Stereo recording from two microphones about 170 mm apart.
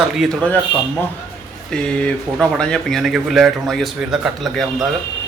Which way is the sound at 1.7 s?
5° left (ahead or behind).